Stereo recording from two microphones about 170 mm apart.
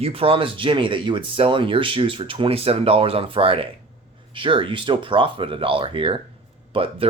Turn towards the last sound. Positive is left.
turn(degrees=-35)  # may be behind; listen again after turning